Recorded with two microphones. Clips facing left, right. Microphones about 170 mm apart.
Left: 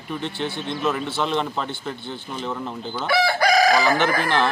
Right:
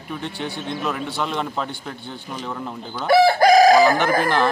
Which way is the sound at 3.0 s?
45° right (ahead or behind).